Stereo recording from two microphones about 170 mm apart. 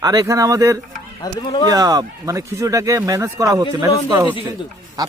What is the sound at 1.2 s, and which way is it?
Speech, 25° left (ahead or behind).